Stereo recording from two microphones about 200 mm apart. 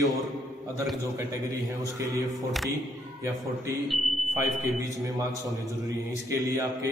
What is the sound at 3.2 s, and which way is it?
Speech, 15° right (ahead or behind).